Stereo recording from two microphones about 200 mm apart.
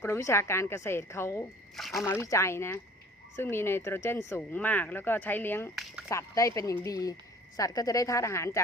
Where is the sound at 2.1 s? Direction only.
15° left (ahead or behind).